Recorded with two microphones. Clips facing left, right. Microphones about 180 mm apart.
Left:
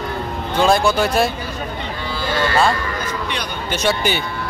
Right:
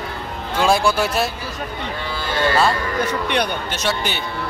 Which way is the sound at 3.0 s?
65° right (ahead or behind).